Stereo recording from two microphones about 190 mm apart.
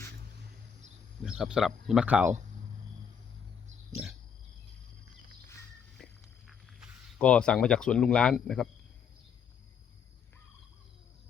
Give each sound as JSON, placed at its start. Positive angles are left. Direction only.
{"t": 1.2, "sound": "speech", "side_deg": -5}
{"t": 4.0, "sound": "pig", "side_deg": -5}
{"t": 6.0, "sound": "walk", "side_deg": 5}
{"t": 6.5, "sound": "a sound", "side_deg": 0}
{"t": 7.2, "sound": "speech", "side_deg": 5}